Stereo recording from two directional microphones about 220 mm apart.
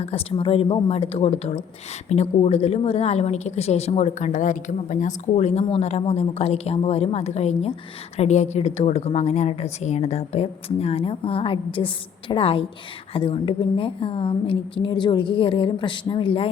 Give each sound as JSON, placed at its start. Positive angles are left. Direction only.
{"t": 0.0, "sound": "a woman's voice", "side_deg": 25}